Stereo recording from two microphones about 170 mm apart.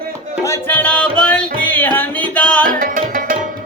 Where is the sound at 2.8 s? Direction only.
55° right (ahead or behind).